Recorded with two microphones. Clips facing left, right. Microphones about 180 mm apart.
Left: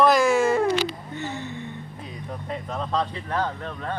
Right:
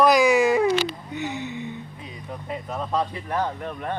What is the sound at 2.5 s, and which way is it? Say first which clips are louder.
Insect: right 1 dB; 5° right (ahead or behind).